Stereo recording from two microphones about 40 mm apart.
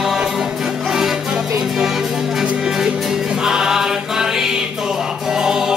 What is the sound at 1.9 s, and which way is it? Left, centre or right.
Music, centre.